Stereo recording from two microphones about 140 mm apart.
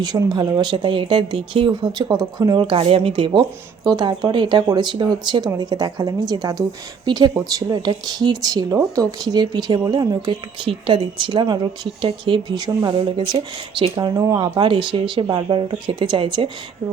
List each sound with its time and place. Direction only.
0.0 s a woman's voice: 30° right (ahead or behind)